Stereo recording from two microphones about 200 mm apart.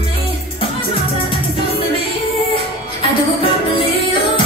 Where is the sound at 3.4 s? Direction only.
30° left (ahead or behind).